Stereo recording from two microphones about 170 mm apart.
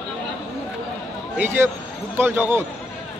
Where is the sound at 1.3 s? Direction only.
15° right (ahead or behind).